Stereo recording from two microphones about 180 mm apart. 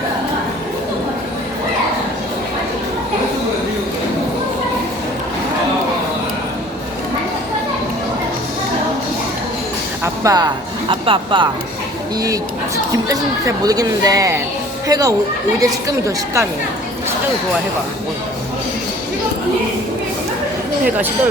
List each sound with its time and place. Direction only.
10.0 s a woman's voice: 20° right (ahead or behind)